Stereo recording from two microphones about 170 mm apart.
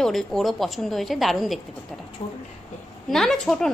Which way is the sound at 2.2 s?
30° left (ahead or behind).